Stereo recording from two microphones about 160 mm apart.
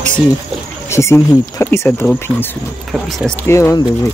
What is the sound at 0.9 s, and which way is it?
Speech, 15° left (ahead or behind).